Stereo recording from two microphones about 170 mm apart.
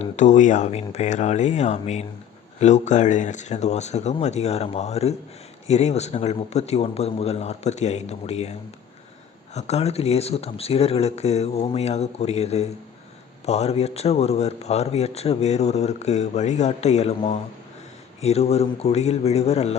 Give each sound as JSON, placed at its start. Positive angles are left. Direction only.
{"t": 0.0, "sound": "a man's voice", "side_deg": 45}
{"t": 9.6, "sound": "a man's voice", "side_deg": 40}